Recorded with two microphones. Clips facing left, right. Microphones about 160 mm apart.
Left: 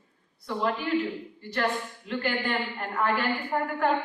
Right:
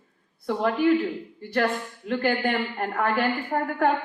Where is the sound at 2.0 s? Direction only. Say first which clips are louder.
Right 5 dB; 50° right (ahead or behind).